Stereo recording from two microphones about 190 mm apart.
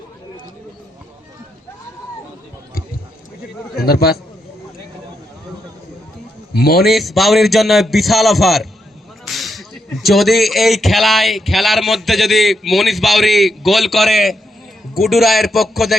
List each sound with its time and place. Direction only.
3.8 s a man's voice: 55° left (ahead or behind)
6.5 s a man's voice: 55° left (ahead or behind)
6.8 s speech: centre (ahead or behind)